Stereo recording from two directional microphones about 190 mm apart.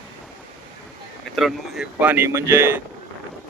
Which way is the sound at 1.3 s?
Centre (ahead or behind).